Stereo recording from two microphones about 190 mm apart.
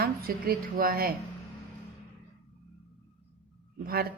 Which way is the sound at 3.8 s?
55° right (ahead or behind).